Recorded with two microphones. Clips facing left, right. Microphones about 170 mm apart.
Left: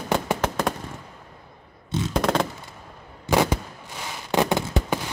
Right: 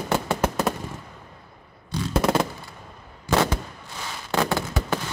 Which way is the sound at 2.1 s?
5° right (ahead or behind).